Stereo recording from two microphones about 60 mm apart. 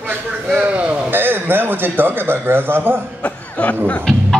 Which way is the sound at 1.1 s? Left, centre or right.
Right.